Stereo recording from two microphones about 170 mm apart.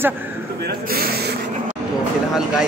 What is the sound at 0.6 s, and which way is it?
Speech, 65° right (ahead or behind).